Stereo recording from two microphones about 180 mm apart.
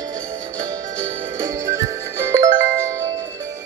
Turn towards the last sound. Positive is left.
turn(degrees=-20)  # may be behind; listen again after turning